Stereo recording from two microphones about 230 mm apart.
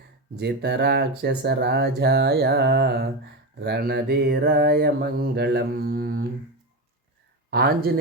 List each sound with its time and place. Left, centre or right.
0.3 s mantra: right
7.5 s mantra: right